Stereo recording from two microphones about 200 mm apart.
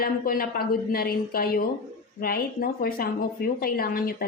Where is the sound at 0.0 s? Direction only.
45° left (ahead or behind).